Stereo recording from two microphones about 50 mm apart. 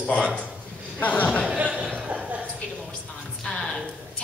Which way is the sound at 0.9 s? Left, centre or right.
Left.